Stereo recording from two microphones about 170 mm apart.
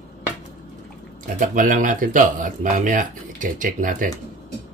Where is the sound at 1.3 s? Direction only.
50° right (ahead or behind).